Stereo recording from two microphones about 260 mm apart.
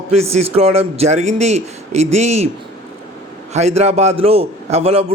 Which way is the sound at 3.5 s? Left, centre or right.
Right.